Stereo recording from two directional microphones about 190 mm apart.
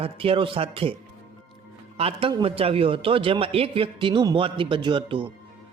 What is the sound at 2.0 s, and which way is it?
A man's voice, 30° right (ahead or behind).